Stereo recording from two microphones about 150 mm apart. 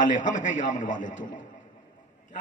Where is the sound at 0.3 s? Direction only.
60° left (ahead or behind).